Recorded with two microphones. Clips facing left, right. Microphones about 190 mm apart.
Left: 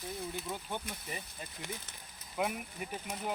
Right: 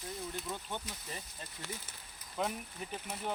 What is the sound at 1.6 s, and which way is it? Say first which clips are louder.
Speech: even; 20° left (ahead or behind).